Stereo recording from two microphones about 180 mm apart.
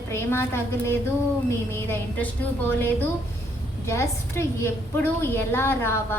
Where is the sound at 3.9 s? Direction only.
15° left (ahead or behind).